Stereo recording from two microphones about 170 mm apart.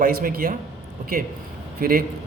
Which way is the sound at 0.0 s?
55° right (ahead or behind).